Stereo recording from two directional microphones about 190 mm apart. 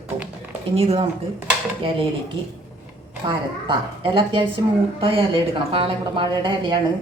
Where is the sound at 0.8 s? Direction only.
30° right (ahead or behind).